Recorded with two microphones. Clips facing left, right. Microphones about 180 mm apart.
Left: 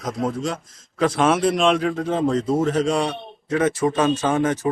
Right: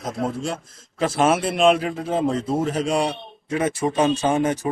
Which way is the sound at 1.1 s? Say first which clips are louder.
Left 1 dB; 5° right (ahead or behind).